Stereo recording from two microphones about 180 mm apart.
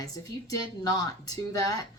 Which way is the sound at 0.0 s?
20° left (ahead or behind).